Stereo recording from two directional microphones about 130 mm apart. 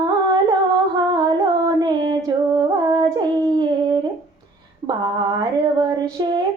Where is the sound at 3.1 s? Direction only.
35° right (ahead or behind).